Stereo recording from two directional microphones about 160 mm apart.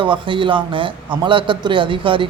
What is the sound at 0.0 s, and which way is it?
A man's voice, 30° right (ahead or behind).